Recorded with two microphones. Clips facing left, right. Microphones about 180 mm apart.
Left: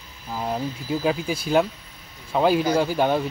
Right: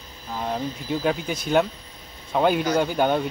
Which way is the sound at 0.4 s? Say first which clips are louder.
Left 1 dB; 5° left (ahead or behind).